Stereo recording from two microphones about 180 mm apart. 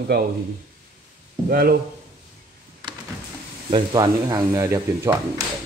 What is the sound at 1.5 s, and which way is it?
Speech, 55° right (ahead or behind).